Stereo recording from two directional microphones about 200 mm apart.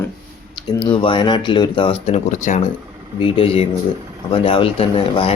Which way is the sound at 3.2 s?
25° left (ahead or behind).